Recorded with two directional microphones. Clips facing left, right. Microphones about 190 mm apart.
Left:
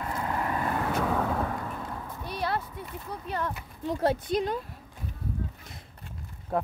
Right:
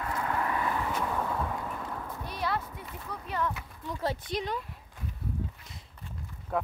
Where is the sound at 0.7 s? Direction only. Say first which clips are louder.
Left 4 dB; 80° left.